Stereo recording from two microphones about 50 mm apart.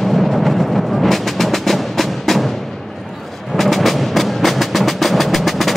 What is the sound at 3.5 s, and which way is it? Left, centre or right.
Music, centre.